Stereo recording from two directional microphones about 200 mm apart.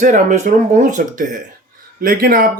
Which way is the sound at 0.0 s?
40° right (ahead or behind).